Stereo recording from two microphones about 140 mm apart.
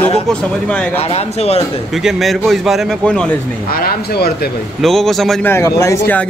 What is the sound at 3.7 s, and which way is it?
Speech, 90° left.